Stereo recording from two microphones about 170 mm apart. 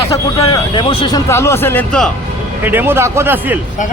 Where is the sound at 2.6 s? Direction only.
10° right (ahead or behind).